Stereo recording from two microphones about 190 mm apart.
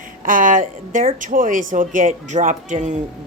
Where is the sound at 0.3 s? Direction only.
40° right (ahead or behind).